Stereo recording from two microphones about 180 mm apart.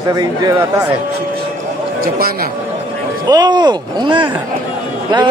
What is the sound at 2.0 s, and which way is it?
Speech, 55° right (ahead or behind).